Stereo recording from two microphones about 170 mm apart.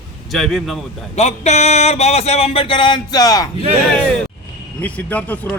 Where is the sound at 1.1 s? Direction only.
40° left (ahead or behind); by 3.4 s 20° left (ahead or behind).